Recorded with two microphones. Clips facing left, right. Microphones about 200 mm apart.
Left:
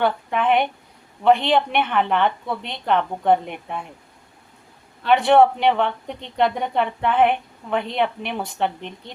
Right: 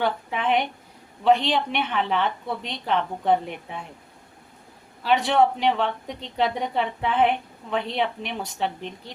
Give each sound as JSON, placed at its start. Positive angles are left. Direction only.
{"t": 0.0, "sound": "a woman's voice", "side_deg": 55}
{"t": 5.0, "sound": "a woman's voice", "side_deg": 60}